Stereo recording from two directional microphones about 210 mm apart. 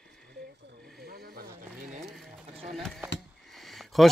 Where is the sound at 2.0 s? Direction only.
Centre (ahead or behind).